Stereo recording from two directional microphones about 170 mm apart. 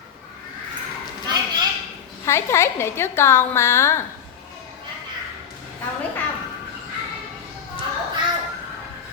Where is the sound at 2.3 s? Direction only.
15° left (ahead or behind).